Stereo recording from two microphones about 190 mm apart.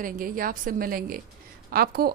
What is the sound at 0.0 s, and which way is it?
A woman's voice, 50° right (ahead or behind).